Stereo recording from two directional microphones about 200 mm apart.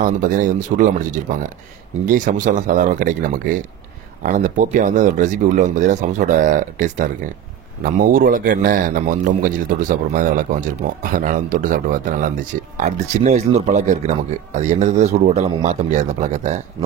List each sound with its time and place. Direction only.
0.0 s a man's voice: 40° right (ahead or behind)